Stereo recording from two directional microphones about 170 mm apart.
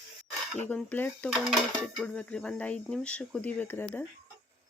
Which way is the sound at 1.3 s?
Centre (ahead or behind).